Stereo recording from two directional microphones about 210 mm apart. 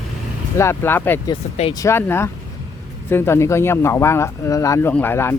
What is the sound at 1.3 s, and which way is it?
Speech, 30° left (ahead or behind).